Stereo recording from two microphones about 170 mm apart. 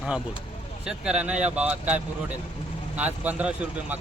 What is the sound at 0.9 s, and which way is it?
Speech, 5° right (ahead or behind).